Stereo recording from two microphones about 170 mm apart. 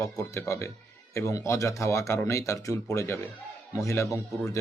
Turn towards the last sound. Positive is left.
turn(degrees=15)  # may be behind; listen again after turning